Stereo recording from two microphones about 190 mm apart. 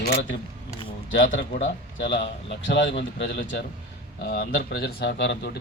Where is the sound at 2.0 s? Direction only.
65° left (ahead or behind).